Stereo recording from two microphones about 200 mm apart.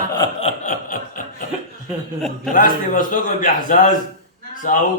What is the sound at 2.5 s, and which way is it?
A man's voice, 45° left (ahead or behind).